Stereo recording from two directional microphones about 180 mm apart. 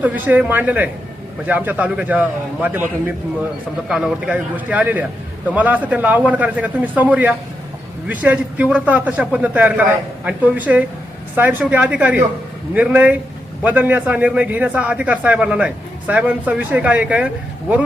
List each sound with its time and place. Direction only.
0.0 s a man's voice: 10° right (ahead or behind)